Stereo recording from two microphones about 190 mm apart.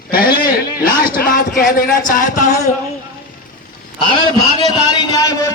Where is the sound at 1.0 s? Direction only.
50° left (ahead or behind).